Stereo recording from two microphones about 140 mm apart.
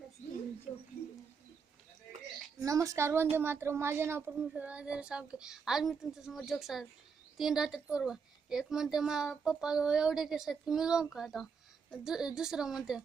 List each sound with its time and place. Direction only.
2.6 s a woman's voice: 25° right (ahead or behind); by 13.0 s 5° right (ahead or behind)